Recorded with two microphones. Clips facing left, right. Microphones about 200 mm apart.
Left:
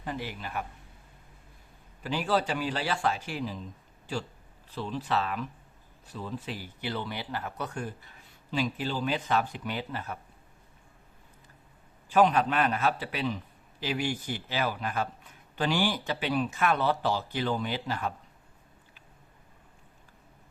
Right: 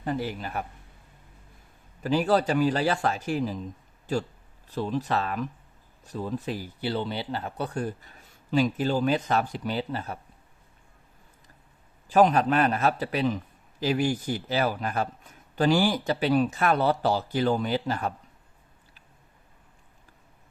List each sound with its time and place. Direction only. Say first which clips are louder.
0.0 s speech: right 6 dB; 40° right (ahead or behind)
2.0 s speech: right 5 dB; 40° right (ahead or behind)
6.9 s a man's voice: right 5 dB; 30° right (ahead or behind)
12.1 s a man's voice: right 3 dB; 40° right (ahead or behind)